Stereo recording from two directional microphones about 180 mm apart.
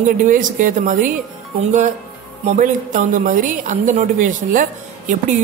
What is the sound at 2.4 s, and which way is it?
A woman's voice, 45° right (ahead or behind).